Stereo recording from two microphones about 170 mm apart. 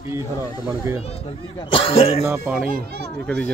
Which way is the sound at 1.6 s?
30° left (ahead or behind).